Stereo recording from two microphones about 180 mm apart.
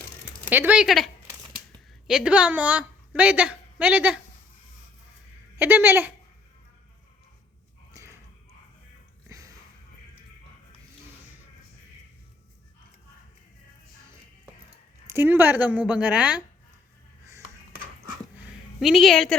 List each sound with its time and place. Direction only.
0.5 s a woman's voice: 10° right (ahead or behind)
5.5 s a woman's voice: 10° right (ahead or behind)
9.3 s a sound: 15° right (ahead or behind)
15.0 s a woman's voice: 10° right (ahead or behind)
18.8 s speech: centre (ahead or behind)